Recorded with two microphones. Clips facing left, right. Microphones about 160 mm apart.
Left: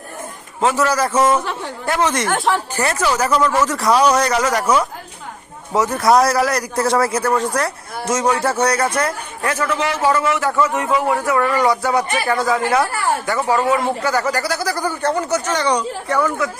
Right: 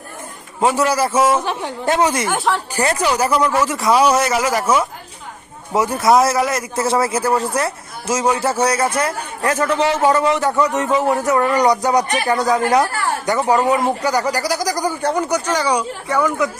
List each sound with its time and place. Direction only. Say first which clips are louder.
0.6 s a man's voice: right 1 dB; 15° right (ahead or behind)
7.1 s a man's voice: even; 30° right (ahead or behind)
8.1 s speech: even; 10° right (ahead or behind)
8.6 s a man's voice: right 1 dB; 30° right (ahead or behind); by 16.5 s 10° right (ahead or behind)